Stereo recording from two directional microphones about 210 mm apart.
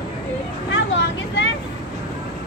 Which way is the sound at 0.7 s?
60° left (ahead or behind).